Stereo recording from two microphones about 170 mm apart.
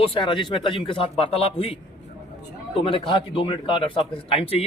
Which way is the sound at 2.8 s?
30° left (ahead or behind).